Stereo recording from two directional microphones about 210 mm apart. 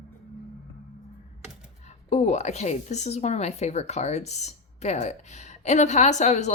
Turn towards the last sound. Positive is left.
turn(degrees=35)  # may be behind; listen again after turning